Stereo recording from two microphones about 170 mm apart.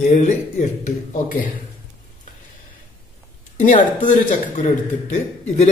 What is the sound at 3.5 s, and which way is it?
Speech, 50° left (ahead or behind).